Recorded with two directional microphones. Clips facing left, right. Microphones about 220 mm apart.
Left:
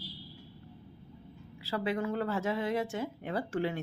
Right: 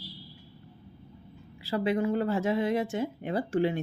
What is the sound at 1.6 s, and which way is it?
Speech, 15° right (ahead or behind).